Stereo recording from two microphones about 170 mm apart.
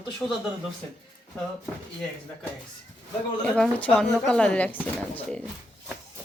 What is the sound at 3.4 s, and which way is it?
A woman's voice, 5° left (ahead or behind).